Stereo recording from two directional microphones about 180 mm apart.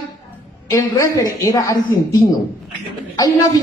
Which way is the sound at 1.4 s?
20° left (ahead or behind).